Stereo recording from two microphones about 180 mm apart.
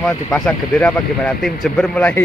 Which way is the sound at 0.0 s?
5° left (ahead or behind).